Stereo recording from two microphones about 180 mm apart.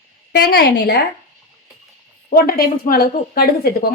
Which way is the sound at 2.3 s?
55° left (ahead or behind).